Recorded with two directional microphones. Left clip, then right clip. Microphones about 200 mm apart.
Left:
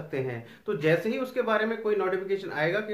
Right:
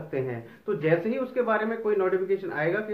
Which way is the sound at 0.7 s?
5° left (ahead or behind).